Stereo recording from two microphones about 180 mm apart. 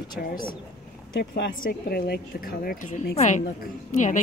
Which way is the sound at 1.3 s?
55° left (ahead or behind).